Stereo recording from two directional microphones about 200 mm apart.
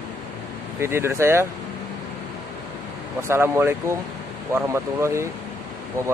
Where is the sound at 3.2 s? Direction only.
10° right (ahead or behind).